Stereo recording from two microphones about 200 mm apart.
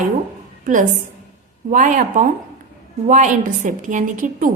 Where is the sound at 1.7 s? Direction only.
40° right (ahead or behind).